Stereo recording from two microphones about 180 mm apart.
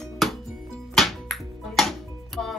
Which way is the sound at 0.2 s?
Centre (ahead or behind).